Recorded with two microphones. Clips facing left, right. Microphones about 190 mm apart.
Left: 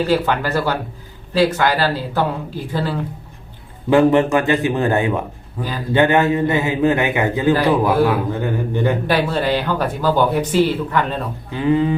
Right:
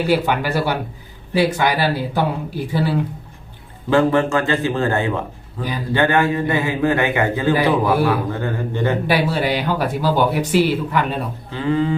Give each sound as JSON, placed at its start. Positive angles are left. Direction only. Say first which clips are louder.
{"t": 0.1, "sound": "speech", "louder": "even", "side_deg": -10}
{"t": 3.8, "sound": "a man's voice", "louder": "left 3 dB", "side_deg": 15}
{"t": 9.0, "sound": "speech", "louder": "left 1 dB", "side_deg": -10}
{"t": 11.5, "sound": "a man's voice", "louder": "left 2 dB", "side_deg": 15}